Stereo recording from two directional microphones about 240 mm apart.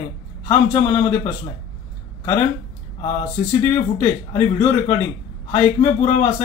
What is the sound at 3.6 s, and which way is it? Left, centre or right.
Speech, centre.